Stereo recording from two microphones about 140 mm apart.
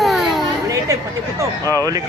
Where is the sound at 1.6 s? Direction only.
20° left (ahead or behind).